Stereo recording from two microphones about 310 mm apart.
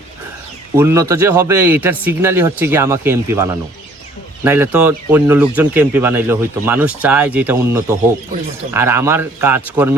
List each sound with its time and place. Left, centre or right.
0.8 s speech: centre